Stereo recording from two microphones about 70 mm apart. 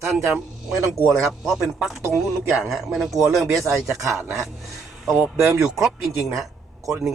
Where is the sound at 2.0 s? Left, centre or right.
Right.